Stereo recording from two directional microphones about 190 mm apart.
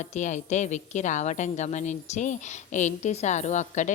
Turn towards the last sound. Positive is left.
turn(degrees=40)  # may be behind; listen again after turning